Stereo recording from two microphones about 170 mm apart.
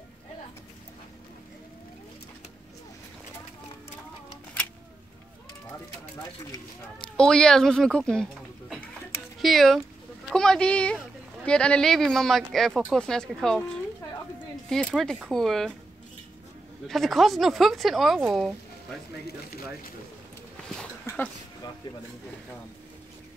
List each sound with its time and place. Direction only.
7.0 s speech: 5° left (ahead or behind)
15.0 s speech: centre (ahead or behind)
16.8 s speech: centre (ahead or behind)
19.2 s speech: 60° left (ahead or behind)